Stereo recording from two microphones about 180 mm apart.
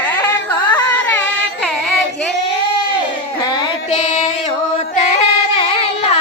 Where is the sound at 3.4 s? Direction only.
20° left (ahead or behind).